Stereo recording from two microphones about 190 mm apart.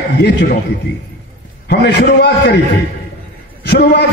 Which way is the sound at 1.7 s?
60° left (ahead or behind).